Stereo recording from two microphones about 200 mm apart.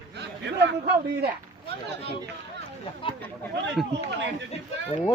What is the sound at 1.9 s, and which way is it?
Speech, 60° right (ahead or behind).